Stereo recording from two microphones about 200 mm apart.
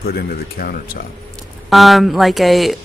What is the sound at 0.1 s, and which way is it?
Speech, 50° left (ahead or behind).